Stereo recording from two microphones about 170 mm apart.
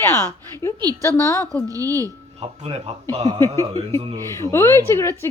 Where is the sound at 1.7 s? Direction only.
20° right (ahead or behind).